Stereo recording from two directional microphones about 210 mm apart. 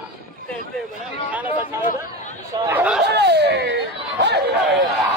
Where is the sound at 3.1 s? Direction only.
50° right (ahead or behind).